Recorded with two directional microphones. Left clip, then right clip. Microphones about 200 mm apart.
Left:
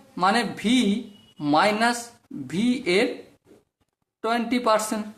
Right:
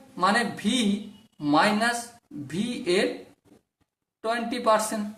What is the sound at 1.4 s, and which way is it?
Speech, 40° left (ahead or behind).